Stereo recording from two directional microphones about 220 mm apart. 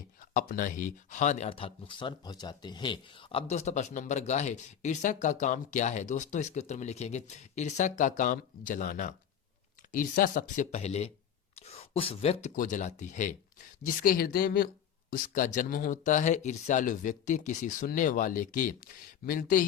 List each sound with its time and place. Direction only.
0.2 s speech: 40° left (ahead or behind)